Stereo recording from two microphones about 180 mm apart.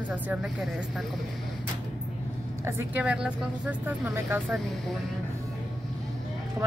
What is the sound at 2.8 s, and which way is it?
Speech, 10° right (ahead or behind).